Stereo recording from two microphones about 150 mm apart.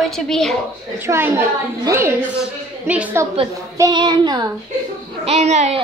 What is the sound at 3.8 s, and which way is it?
Speech, 30° right (ahead or behind).